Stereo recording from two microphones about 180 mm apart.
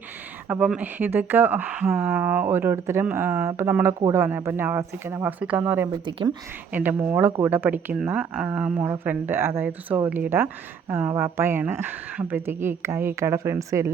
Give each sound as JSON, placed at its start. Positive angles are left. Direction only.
{"t": 0.4, "sound": "speech", "side_deg": -10}
{"t": 6.1, "sound": "speech", "side_deg": -25}
{"t": 6.7, "sound": "speech", "side_deg": -10}